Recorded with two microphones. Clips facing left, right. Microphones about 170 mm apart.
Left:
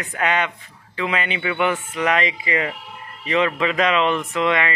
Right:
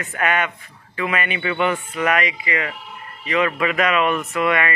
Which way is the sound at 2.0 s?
25° left (ahead or behind).